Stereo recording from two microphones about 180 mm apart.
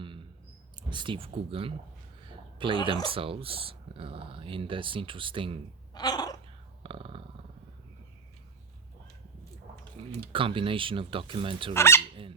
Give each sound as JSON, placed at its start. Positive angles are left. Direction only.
{"t": 0.0, "sound": "a sound", "side_deg": -30}
{"t": 0.8, "sound": "speech", "side_deg": -25}
{"t": 2.2, "sound": "a sound", "side_deg": -25}
{"t": 3.1, "sound": "speech", "side_deg": -30}
{"t": 5.9, "sound": "throat clearing", "side_deg": 20}
{"t": 6.8, "sound": "dog", "side_deg": -30}
{"t": 10.0, "sound": "typing", "side_deg": -30}
{"t": 10.3, "sound": "speech", "side_deg": -30}
{"t": 11.7, "sound": "speech", "side_deg": 15}